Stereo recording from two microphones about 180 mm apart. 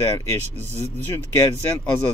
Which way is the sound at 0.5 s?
35° right (ahead or behind).